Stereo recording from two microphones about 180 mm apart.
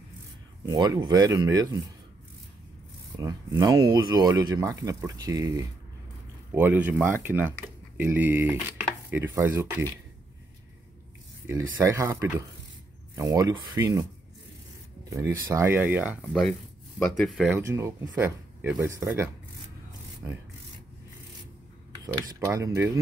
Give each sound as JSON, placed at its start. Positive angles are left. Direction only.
{"t": 0.7, "sound": "speech", "side_deg": -20}
{"t": 3.2, "sound": "speech", "side_deg": -20}
{"t": 11.8, "sound": "speech", "side_deg": -15}
{"t": 15.0, "sound": "speech", "side_deg": -15}
{"t": 17.2, "sound": "speech", "side_deg": 0}
{"t": 17.6, "sound": "speech", "side_deg": -15}
{"t": 22.0, "sound": "speech", "side_deg": -20}